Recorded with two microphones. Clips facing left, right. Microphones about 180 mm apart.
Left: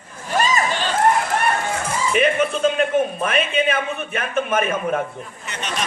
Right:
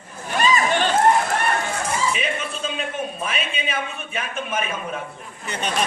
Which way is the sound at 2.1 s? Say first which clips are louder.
Left 8 dB; 55° left (ahead or behind).